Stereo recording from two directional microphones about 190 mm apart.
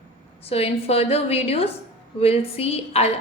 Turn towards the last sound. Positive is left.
turn(degrees=35)  # may be behind; listen again after turning